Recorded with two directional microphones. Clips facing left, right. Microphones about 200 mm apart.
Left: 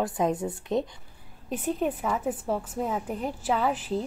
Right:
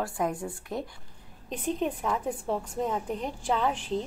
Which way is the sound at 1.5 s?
5° left (ahead or behind).